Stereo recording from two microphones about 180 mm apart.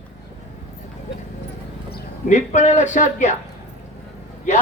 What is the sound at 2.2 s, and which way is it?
Speech, 40° left (ahead or behind).